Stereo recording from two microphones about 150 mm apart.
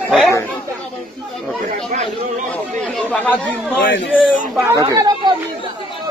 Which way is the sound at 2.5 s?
5° left (ahead or behind).